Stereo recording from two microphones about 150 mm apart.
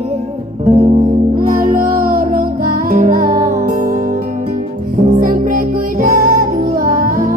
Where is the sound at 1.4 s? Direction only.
60° right (ahead or behind).